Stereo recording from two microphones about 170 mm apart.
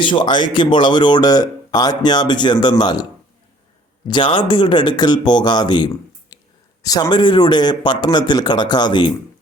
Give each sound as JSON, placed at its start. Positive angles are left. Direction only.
{"t": 0.0, "sound": "speech", "side_deg": 30}
{"t": 4.1, "sound": "speech", "side_deg": 30}
{"t": 6.3, "sound": "a sound", "side_deg": 20}
{"t": 6.8, "sound": "speech", "side_deg": 20}